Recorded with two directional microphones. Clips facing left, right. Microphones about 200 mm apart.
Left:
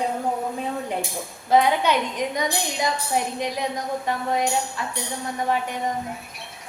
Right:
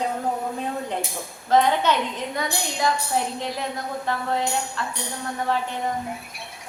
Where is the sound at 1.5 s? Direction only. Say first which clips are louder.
Even; 10° left (ahead or behind).